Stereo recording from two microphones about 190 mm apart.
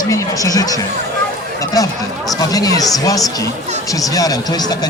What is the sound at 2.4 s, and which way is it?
Speech, 20° left (ahead or behind).